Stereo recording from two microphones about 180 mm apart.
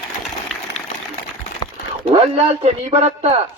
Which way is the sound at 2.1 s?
35° right (ahead or behind).